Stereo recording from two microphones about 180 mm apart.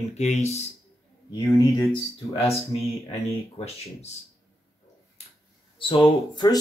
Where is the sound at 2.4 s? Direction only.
35° left (ahead or behind).